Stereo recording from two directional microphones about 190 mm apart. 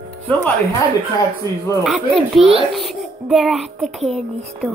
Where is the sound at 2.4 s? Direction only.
30° right (ahead or behind).